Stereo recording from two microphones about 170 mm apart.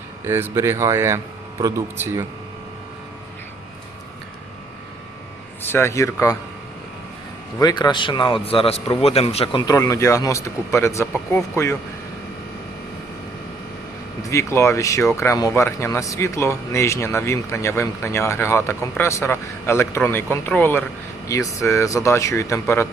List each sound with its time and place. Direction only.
0.3 s speech: 15° right (ahead or behind)
5.6 s speech: 15° left (ahead or behind)
7.6 s a man's voice: 25° left (ahead or behind)
14.3 s speech: 15° left (ahead or behind)